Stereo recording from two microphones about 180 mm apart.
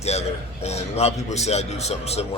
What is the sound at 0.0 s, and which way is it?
A man's voice, 35° left (ahead or behind).